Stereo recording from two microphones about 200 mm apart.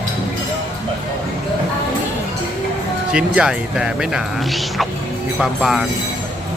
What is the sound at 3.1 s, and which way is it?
Speech, 5° right (ahead or behind).